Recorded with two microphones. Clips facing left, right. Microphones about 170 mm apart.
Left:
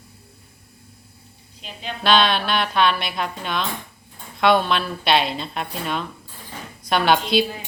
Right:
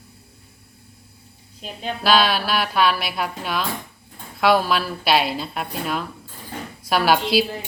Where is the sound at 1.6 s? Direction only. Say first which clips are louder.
Right 4 dB; 40° right (ahead or behind).